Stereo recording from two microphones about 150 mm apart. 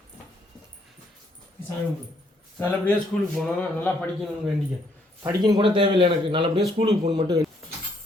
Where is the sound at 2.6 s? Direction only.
10° left (ahead or behind).